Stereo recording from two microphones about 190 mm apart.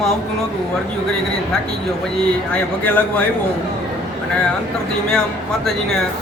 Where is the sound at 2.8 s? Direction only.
10° left (ahead or behind).